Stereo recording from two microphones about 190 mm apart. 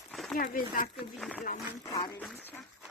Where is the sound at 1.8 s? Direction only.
20° left (ahead or behind).